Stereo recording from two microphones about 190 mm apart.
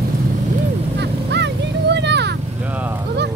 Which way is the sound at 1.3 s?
65° right (ahead or behind).